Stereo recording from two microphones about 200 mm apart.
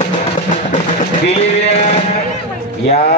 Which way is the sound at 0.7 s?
35° left (ahead or behind).